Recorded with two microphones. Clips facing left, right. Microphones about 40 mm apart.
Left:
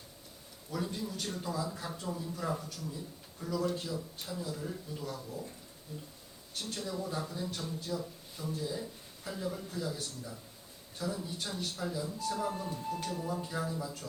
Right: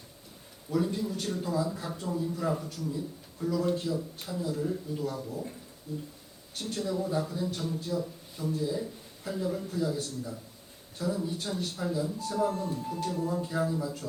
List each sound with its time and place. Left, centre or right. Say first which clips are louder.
0.7 s a man's voice: right 7 dB; centre
5.0 s speech: right 4 dB; centre
6.6 s a man's voice: right 6 dB; centre
7.6 s speech: right 6 dB; right
7.9 s speech: right 5 dB; centre
12.5 s speech: right 5 dB; centre
13.3 s a man's voice: right 6 dB; centre